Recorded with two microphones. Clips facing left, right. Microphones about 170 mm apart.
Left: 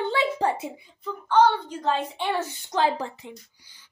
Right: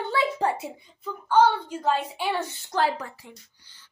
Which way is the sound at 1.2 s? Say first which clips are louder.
Even; 10° right (ahead or behind).